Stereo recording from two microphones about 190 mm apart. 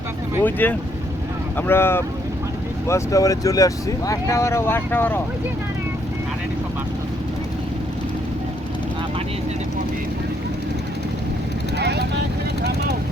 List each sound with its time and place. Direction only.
0.4 s speech: 10° left (ahead or behind)
11.8 s vehicle: 60° right (ahead or behind)